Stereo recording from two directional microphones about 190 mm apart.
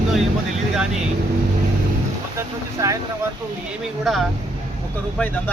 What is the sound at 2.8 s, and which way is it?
Speech, 15° right (ahead or behind).